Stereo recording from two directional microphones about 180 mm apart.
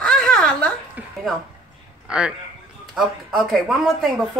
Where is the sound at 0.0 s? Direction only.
5° left (ahead or behind).